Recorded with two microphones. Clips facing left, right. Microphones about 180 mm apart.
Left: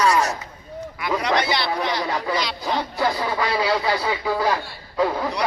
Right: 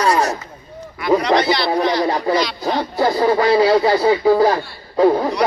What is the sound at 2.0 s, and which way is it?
Speech, 35° right (ahead or behind).